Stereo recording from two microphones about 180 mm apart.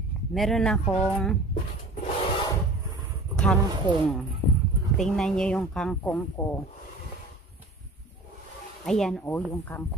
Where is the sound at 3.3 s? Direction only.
5° left (ahead or behind).